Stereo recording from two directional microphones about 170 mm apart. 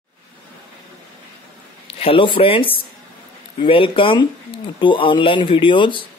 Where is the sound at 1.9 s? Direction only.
35° left (ahead or behind).